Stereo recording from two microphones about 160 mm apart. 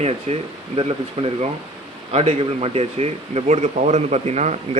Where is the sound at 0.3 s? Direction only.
40° right (ahead or behind).